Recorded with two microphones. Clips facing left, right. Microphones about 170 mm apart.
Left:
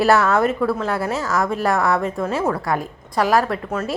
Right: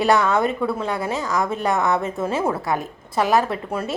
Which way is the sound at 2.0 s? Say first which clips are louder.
Left 1 dB; centre (ahead or behind).